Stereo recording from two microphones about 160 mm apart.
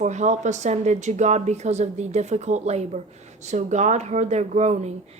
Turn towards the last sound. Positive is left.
turn(degrees=-45)  # may be behind; listen again after turning